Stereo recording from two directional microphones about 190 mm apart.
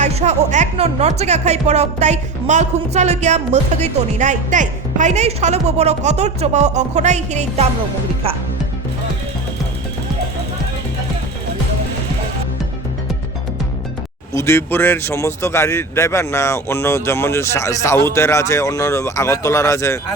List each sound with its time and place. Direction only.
0.0 s speech: 35° right (ahead or behind)
14.3 s a man's voice: 15° left (ahead or behind)